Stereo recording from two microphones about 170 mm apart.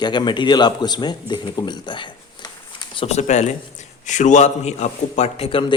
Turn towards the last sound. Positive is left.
turn(degrees=30)  # may be behind; listen again after turning